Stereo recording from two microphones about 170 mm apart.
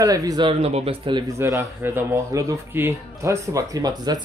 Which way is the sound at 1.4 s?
15° right (ahead or behind).